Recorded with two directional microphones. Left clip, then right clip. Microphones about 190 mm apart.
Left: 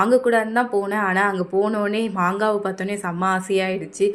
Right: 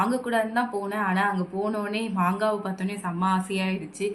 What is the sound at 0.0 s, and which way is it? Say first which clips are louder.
Speech: left 8 dB; 40° left (ahead or behind).